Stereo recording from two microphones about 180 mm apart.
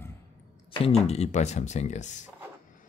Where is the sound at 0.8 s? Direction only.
35° left (ahead or behind).